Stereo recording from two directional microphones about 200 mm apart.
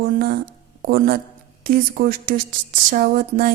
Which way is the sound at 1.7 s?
45° right (ahead or behind).